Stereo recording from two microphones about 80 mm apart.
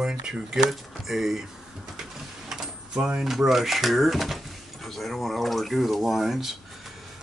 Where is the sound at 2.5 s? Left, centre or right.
Centre.